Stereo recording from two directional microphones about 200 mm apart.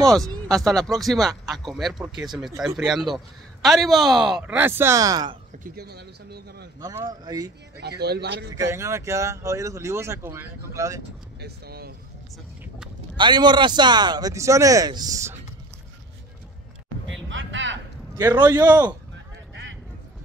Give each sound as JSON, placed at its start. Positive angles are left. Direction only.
{"t": 0.0, "sound": "speech", "side_deg": 0}
{"t": 5.6, "sound": "speech", "side_deg": -50}
{"t": 6.8, "sound": "speech", "side_deg": -20}
{"t": 7.8, "sound": "speech", "side_deg": -55}
{"t": 8.5, "sound": "speech", "side_deg": -15}
{"t": 11.4, "sound": "speech", "side_deg": -50}
{"t": 13.1, "sound": "a man's voice", "side_deg": -20}
{"t": 17.3, "sound": "a sound", "side_deg": -70}
{"t": 18.1, "sound": "speech", "side_deg": -15}